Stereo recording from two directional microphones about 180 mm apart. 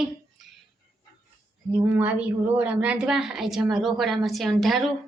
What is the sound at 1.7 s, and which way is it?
A woman's voice, 10° right (ahead or behind).